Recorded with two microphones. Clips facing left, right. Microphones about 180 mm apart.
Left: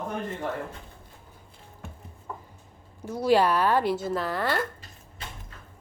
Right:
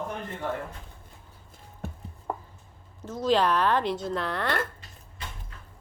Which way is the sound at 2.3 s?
60° right (ahead or behind).